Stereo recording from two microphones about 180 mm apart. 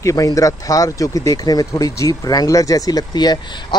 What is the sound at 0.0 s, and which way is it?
Speech, 20° left (ahead or behind).